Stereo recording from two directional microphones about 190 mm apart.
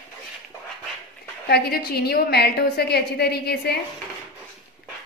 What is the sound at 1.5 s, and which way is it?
A woman's voice, 55° left (ahead or behind).